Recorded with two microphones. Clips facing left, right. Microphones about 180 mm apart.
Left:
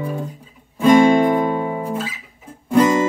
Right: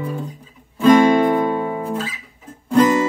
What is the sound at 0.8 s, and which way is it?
Music, 10° left (ahead or behind).